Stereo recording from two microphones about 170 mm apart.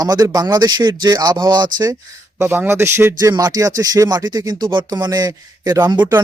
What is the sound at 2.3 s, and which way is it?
A man's voice, 15° right (ahead or behind).